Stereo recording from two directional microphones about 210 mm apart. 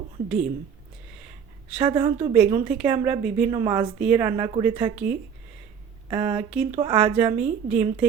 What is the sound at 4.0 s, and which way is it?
A woman's voice, 5° right (ahead or behind).